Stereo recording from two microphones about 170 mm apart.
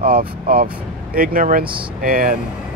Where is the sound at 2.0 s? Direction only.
55° right (ahead or behind).